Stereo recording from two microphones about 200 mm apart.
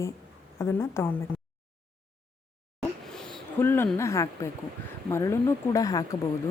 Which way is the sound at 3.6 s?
10° left (ahead or behind).